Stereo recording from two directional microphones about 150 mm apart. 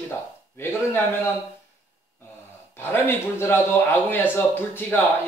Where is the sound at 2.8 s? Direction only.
15° left (ahead or behind).